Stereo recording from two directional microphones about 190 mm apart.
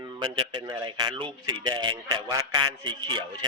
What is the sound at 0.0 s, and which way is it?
A man's voice, 25° right (ahead or behind).